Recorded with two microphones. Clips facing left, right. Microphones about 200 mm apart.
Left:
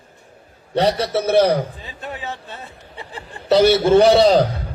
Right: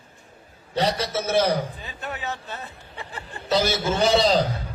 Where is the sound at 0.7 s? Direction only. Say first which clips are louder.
Left 6 dB; 65° left (ahead or behind).